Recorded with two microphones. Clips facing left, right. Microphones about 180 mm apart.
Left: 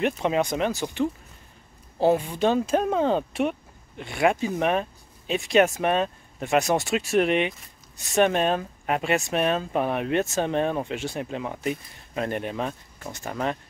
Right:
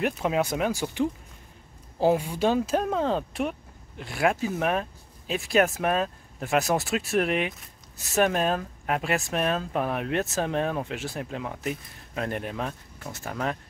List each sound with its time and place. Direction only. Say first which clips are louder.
0.0 s speech: left 2 dB; 5° right (ahead or behind)
2.0 s speech: left 2 dB; 10° right (ahead or behind)